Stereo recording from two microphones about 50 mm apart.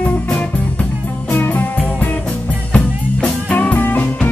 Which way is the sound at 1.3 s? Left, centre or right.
Left.